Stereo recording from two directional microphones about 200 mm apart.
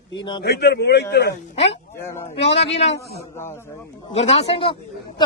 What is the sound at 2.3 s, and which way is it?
Speech, 30° left (ahead or behind).